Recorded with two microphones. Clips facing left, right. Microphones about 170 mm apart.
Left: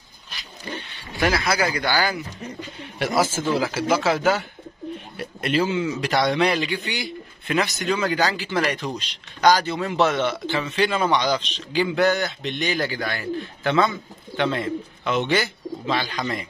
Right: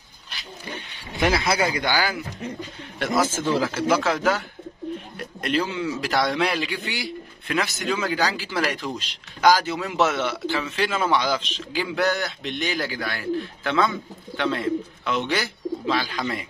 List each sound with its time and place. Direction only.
1.1 s speech: 20° right (ahead or behind)
1.7 s speech: 10° right (ahead or behind)
3.0 s a man's voice: 5° left (ahead or behind)